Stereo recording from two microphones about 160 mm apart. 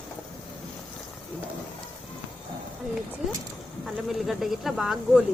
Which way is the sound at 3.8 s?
Centre (ahead or behind).